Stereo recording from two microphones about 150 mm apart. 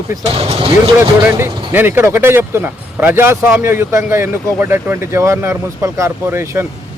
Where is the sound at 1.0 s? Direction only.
20° right (ahead or behind).